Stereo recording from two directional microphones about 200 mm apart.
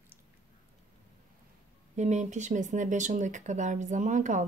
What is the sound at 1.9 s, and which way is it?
Speech, 35° right (ahead or behind).